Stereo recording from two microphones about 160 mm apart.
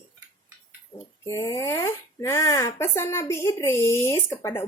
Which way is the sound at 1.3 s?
20° left (ahead or behind).